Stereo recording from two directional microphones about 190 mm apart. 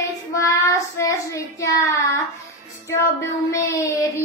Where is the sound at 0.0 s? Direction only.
15° left (ahead or behind).